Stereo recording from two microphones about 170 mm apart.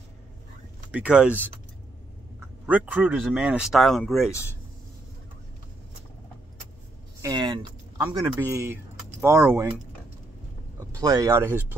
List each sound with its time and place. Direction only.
0.9 s speech: 5° right (ahead or behind)
2.6 s speech: 10° right (ahead or behind)
4.3 s speech: 15° left (ahead or behind)
7.2 s speech: 25° right (ahead or behind)
8.4 s speech: 15° right (ahead or behind)
11.0 s speech: 20° right (ahead or behind)